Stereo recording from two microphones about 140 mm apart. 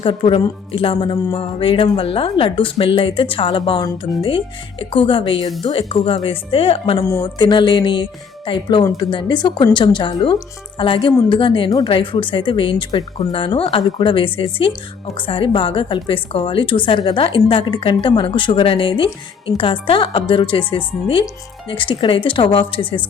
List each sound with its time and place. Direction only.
0.0 s a woman's voice: 40° left (ahead or behind)